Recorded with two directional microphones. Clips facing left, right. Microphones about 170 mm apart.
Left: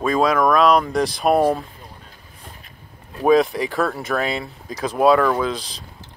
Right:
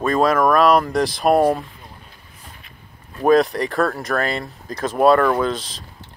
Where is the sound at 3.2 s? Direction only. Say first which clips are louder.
Right 1 dB; centre (ahead or behind).